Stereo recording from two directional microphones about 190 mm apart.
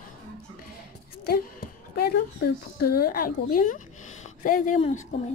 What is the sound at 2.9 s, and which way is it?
A woman's voice, 50° left (ahead or behind).